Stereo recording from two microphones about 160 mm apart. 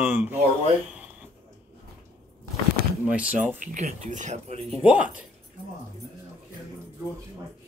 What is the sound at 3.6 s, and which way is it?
Speech, 45° right (ahead or behind).